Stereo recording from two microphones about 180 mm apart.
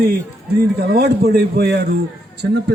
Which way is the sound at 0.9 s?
65° right (ahead or behind).